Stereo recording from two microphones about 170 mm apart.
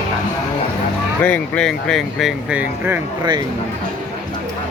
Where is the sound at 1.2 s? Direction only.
5° left (ahead or behind); by 3.0 s 10° right (ahead or behind).